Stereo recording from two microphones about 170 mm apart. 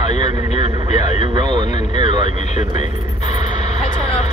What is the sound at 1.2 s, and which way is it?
Speech, 25° right (ahead or behind).